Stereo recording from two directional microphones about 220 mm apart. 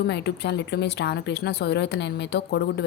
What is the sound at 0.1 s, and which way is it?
Speech, 50° left (ahead or behind).